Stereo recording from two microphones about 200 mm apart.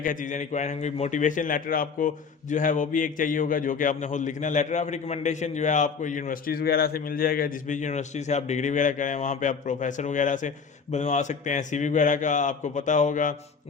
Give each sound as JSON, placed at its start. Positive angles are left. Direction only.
{"t": 0.0, "sound": "a man's voice", "side_deg": 40}